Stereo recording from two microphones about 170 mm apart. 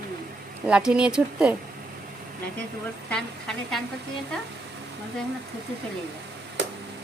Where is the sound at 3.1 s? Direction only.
5° left (ahead or behind).